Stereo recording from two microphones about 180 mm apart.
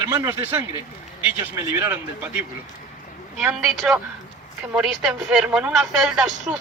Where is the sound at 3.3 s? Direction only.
5° right (ahead or behind).